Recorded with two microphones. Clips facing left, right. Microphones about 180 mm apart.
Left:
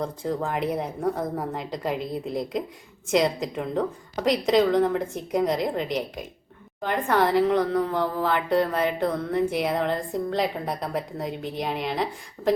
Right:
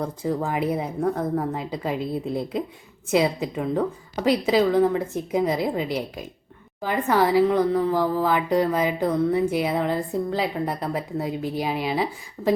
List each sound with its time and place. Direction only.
0.0 s a woman's voice: 10° right (ahead or behind)